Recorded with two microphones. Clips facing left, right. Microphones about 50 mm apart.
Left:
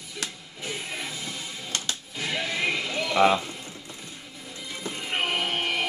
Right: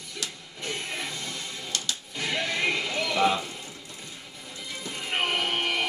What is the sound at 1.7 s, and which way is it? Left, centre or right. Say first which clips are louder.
Music: left 2 dB; left.